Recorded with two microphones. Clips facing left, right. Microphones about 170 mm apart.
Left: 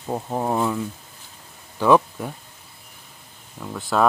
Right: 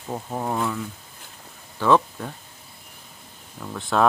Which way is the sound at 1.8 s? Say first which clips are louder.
Left 2 dB; 10° left (ahead or behind).